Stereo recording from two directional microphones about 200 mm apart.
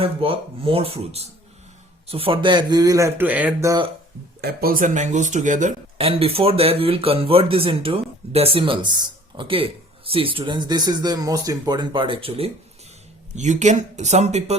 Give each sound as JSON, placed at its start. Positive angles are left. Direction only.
{"t": 0.0, "sound": "speech", "side_deg": -30}
{"t": 4.4, "sound": "speech", "side_deg": -50}